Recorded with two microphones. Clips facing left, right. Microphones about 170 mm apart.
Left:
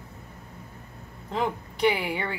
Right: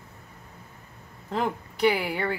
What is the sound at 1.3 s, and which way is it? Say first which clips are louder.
Speech: even; 5° right (ahead or behind).